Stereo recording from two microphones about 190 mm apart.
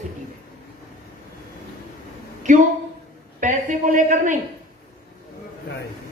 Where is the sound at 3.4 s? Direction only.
40° right (ahead or behind).